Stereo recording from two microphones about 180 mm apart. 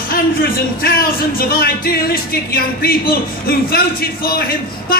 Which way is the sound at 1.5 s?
55° left (ahead or behind).